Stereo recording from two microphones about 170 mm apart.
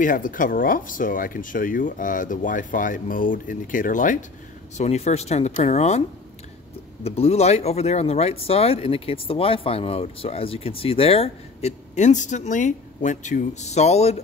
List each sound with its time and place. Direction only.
0.0 s speech: 50° left (ahead or behind)
4.7 s speech: 40° left (ahead or behind)